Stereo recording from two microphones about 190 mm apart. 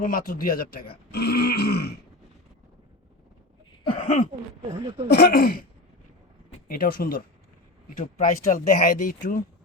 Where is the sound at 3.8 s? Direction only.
35° left (ahead or behind).